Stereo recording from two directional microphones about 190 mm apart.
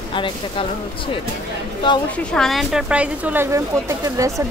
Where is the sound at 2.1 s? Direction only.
5° left (ahead or behind).